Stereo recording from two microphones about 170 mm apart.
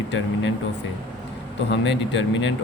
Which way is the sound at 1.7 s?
90° left.